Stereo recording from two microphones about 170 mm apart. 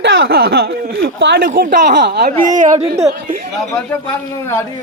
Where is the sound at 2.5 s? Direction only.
50° right (ahead or behind).